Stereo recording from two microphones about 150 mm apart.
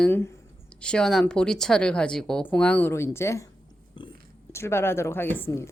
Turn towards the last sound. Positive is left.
turn(degrees=15)  # may be behind; listen again after turning